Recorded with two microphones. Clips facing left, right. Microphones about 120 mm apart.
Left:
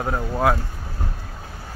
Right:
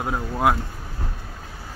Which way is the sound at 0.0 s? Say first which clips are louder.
Left 1 dB; 10° right (ahead or behind).